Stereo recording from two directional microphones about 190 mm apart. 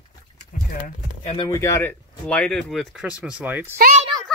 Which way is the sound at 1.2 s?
25° left (ahead or behind).